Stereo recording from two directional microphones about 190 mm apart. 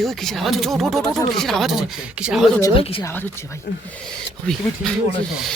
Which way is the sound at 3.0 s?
10° left (ahead or behind).